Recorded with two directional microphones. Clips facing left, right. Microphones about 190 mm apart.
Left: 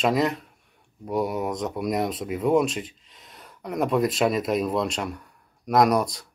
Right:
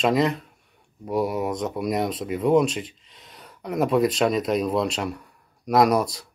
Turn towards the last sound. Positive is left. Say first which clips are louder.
# right 1 dB
turn(degrees=0)  # may be behind; listen again after turning